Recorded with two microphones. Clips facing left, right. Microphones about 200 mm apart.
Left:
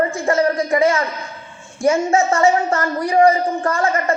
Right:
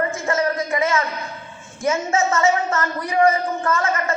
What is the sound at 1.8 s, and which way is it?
A woman's voice, 30° left (ahead or behind).